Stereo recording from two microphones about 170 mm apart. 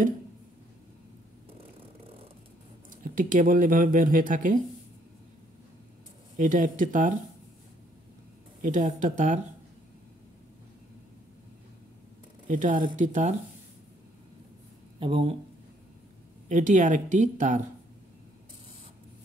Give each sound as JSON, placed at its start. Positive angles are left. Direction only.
{"t": 2.9, "sound": "speech", "side_deg": -50}
{"t": 6.3, "sound": "speech", "side_deg": -50}
{"t": 8.6, "sound": "speech", "side_deg": -50}
{"t": 12.4, "sound": "speech", "side_deg": -50}
{"t": 15.0, "sound": "speech", "side_deg": -30}
{"t": 16.4, "sound": "speech", "side_deg": -45}